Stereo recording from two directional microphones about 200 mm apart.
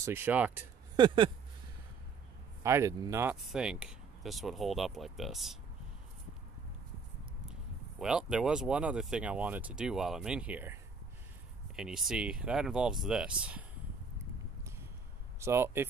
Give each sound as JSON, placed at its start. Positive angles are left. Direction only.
{"t": 0.0, "sound": "speech", "side_deg": -10}
{"t": 0.9, "sound": "a sound", "side_deg": -25}
{"t": 2.6, "sound": "speech", "side_deg": -15}
{"t": 3.3, "sound": "speech", "side_deg": 0}
{"t": 8.0, "sound": "speech", "side_deg": -5}
{"t": 15.4, "sound": "speech", "side_deg": -10}